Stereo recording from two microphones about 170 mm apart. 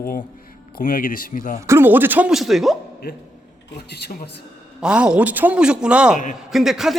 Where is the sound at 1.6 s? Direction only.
15° right (ahead or behind).